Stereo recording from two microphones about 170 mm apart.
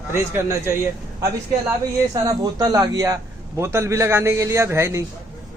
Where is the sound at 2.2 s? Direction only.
20° right (ahead or behind).